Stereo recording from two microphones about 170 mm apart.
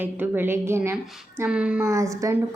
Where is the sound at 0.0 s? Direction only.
10° right (ahead or behind).